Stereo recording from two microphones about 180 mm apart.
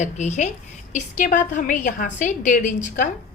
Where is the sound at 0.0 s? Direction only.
40° left (ahead or behind).